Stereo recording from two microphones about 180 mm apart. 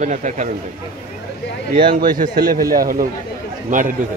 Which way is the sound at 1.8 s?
50° right (ahead or behind).